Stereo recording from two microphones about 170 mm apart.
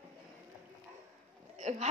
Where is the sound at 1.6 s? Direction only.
40° right (ahead or behind).